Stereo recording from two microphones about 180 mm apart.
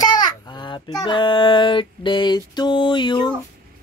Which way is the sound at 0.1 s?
25° left (ahead or behind).